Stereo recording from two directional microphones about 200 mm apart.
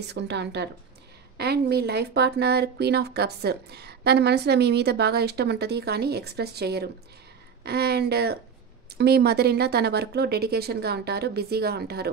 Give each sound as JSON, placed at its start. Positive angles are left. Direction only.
{"t": 0.1, "sound": "speech", "side_deg": -60}